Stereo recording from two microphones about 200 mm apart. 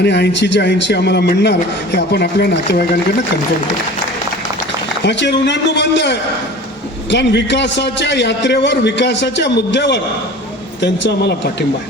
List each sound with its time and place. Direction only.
0.0 s a man's voice: 60° left (ahead or behind)
5.0 s a man's voice: 60° left (ahead or behind)